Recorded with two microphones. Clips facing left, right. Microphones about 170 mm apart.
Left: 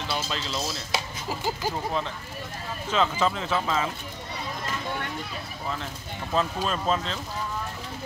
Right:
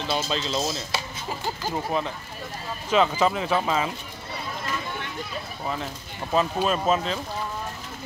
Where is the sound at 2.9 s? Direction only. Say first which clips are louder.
Right 4 dB; 15° right (ahead or behind).